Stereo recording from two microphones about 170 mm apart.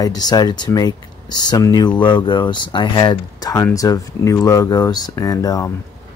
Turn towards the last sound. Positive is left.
turn(degrees=20)  # may be behind; listen again after turning